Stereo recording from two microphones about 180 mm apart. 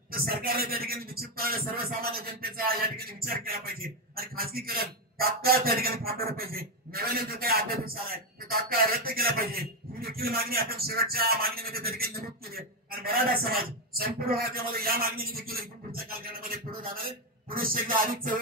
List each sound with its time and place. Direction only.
0.1 s a man's voice: 55° right (ahead or behind)
17.5 s music: 55° right (ahead or behind)